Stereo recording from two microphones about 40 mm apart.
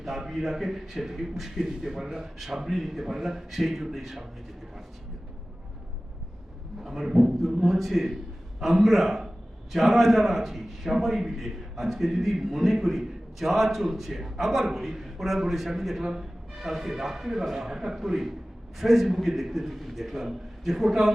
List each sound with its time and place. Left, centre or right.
0.0 s a man's voice: centre
1.6 s a man's voice: centre
6.8 s a man's voice: centre